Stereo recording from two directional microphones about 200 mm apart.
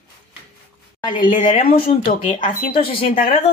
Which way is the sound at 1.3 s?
40° left (ahead or behind).